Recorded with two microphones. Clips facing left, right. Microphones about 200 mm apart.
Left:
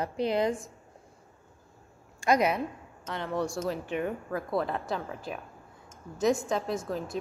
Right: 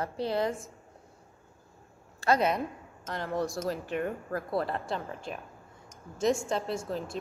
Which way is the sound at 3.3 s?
Centre (ahead or behind).